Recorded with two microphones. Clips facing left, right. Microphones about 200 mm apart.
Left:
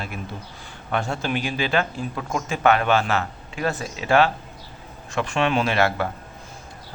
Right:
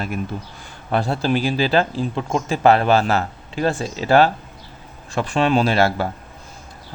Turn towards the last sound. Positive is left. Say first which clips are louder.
# right 4 dB
turn(degrees=-35)  # may be behind; listen again after turning